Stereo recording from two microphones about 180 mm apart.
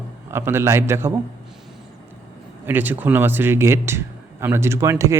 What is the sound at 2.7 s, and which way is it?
A man's voice, 10° right (ahead or behind).